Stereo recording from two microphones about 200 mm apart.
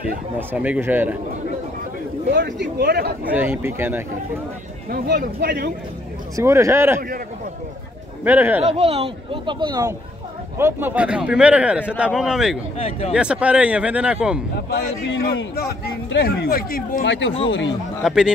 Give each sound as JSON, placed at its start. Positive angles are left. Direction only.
{"t": 0.4, "sound": "speech", "side_deg": -10}
{"t": 2.2, "sound": "speech", "side_deg": -60}
{"t": 3.3, "sound": "speech", "side_deg": -10}
{"t": 4.9, "sound": "speech", "side_deg": -50}
{"t": 6.3, "sound": "speech", "side_deg": -15}
{"t": 8.2, "sound": "speech", "side_deg": -10}
{"t": 8.6, "sound": "speech", "side_deg": -30}
{"t": 10.6, "sound": "speech", "side_deg": -10}
{"t": 12.7, "sound": "speech", "side_deg": 30}
{"t": 13.1, "sound": "speech", "side_deg": -5}
{"t": 15.5, "sound": "speech", "side_deg": 55}
{"t": 17.1, "sound": "speech", "side_deg": 70}
{"t": 18.0, "sound": "speech", "side_deg": -5}